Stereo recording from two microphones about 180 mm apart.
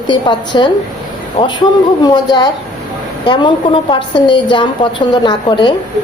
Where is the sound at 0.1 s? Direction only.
25° left (ahead or behind).